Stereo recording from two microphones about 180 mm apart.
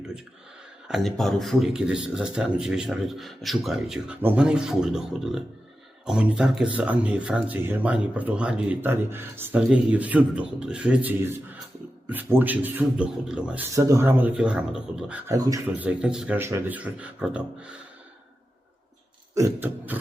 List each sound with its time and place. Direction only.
0.9 s speech: centre (ahead or behind)
13.7 s speech: 15° right (ahead or behind)
15.3 s speech: 20° right (ahead or behind)
15.8 s speech: 5° right (ahead or behind)
19.3 s speech: 15° right (ahead or behind)